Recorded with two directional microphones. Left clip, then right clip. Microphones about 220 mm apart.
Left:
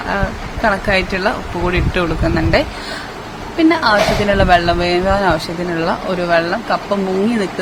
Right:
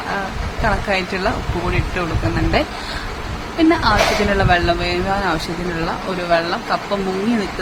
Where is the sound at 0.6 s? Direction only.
15° left (ahead or behind).